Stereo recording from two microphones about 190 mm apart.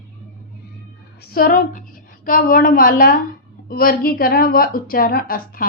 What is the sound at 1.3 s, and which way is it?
A woman's voice, 50° left (ahead or behind).